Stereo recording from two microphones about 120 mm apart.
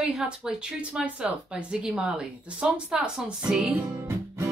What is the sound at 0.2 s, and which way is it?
A woman's voice, 5° right (ahead or behind).